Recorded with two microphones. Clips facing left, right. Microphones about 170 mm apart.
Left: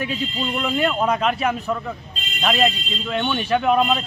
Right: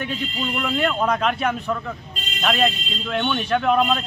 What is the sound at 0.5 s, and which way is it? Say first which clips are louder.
A man's voice: left 1 dB; 5° left (ahead or behind).